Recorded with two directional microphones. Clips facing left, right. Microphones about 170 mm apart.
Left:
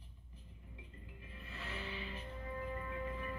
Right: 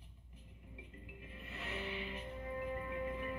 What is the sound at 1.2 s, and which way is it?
Music, 20° right (ahead or behind).